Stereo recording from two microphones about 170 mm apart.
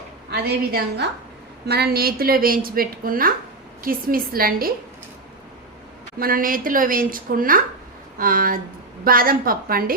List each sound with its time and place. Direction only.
0.3 s a woman's voice: 70° right (ahead or behind)
6.1 s a woman's voice: 55° right (ahead or behind)